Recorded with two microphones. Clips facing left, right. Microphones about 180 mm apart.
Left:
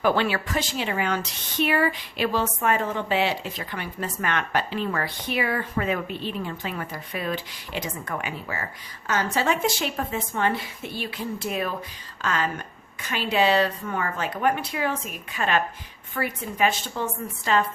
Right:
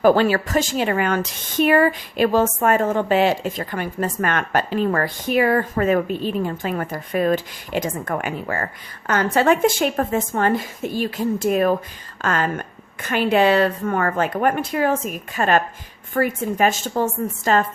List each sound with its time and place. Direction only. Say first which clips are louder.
0.0 s speech: right 7 dB; 45° right (ahead or behind)